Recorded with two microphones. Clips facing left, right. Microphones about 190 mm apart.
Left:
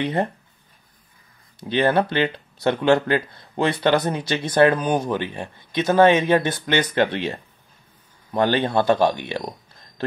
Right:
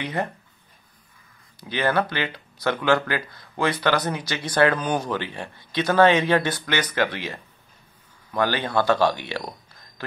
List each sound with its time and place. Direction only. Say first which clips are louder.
0.0 s speech: left 5 dB; 25° left (ahead or behind)
1.6 s speech: left 4 dB; 20° left (ahead or behind)